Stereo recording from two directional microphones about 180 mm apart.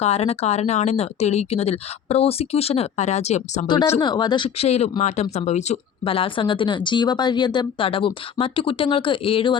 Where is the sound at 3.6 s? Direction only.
25° left (ahead or behind).